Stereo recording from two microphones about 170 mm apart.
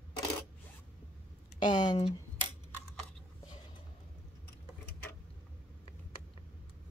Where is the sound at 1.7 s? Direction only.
25° left (ahead or behind).